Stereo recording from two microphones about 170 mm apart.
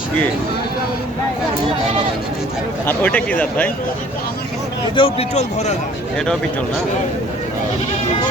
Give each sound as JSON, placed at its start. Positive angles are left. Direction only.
{"t": 2.8, "sound": "speech", "side_deg": 10}
{"t": 4.9, "sound": "a man's voice", "side_deg": 35}
{"t": 6.1, "sound": "speech", "side_deg": 5}